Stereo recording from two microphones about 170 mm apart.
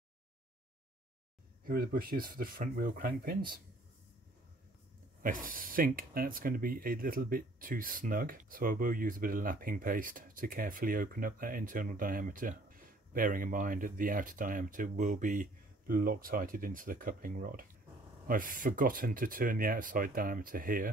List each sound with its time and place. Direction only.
1.6 s speech: 60° right (ahead or behind)
5.2 s speech: 55° right (ahead or behind)